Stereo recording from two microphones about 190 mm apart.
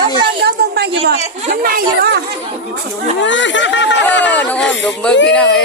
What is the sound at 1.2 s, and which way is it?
Speech, 45° right (ahead or behind).